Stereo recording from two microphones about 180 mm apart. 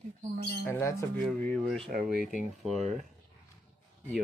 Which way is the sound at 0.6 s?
15° left (ahead or behind).